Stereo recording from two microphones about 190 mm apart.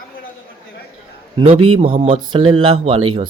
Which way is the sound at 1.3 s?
25° right (ahead or behind).